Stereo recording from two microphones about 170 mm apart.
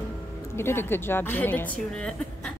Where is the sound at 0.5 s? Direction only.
15° left (ahead or behind).